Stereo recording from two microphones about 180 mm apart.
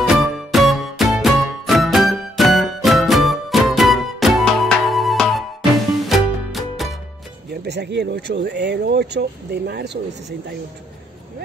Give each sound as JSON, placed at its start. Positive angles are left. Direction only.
{"t": 0.0, "sound": "music", "side_deg": 0}
{"t": 7.6, "sound": "speech", "side_deg": -65}